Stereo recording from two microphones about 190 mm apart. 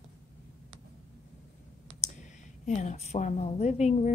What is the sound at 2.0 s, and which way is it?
Speech, 35° left (ahead or behind).